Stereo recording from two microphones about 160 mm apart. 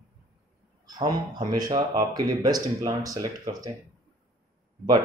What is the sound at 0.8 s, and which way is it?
Speech, 25° right (ahead or behind).